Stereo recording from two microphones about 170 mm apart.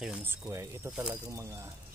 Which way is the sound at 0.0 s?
10° right (ahead or behind).